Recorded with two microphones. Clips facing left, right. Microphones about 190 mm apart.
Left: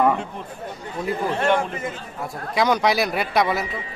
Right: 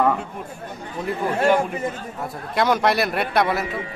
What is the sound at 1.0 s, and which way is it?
Moo, 5° right (ahead or behind).